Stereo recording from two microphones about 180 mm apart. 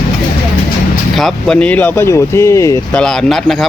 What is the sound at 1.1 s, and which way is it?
Speech, centre (ahead or behind).